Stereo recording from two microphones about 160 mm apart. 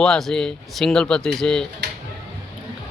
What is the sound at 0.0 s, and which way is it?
Speech, 5° left (ahead or behind).